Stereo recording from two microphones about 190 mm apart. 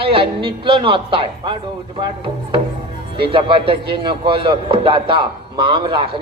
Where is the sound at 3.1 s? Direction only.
25° right (ahead or behind).